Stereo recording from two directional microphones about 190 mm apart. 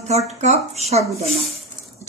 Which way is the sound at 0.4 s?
35° right (ahead or behind).